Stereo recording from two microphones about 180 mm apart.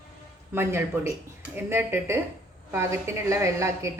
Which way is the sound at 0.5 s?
15° right (ahead or behind).